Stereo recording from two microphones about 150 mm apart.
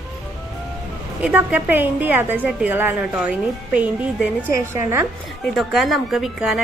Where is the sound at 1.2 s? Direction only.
10° right (ahead or behind).